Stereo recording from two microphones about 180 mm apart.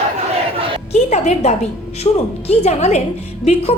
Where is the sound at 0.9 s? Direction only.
35° left (ahead or behind).